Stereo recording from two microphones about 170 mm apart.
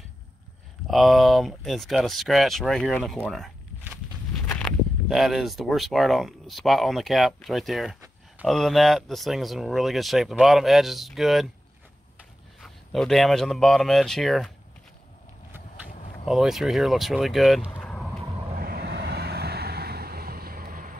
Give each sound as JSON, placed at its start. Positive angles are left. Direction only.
{"t": 0.8, "sound": "speech", "side_deg": 0}
{"t": 12.5, "sound": "speech", "side_deg": 0}
{"t": 16.3, "sound": "speech", "side_deg": 0}
{"t": 17.7, "sound": "vehicle", "side_deg": 5}
{"t": 18.6, "sound": "vehicle", "side_deg": -65}